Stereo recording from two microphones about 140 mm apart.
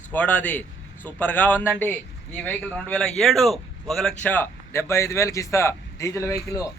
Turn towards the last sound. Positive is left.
turn(degrees=25)  # may be behind; listen again after turning